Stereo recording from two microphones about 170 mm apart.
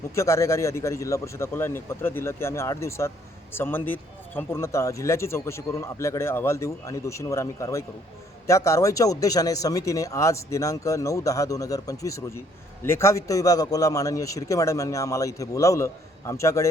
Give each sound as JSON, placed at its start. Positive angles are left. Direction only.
{"t": 0.1, "sound": "speech", "side_deg": 15}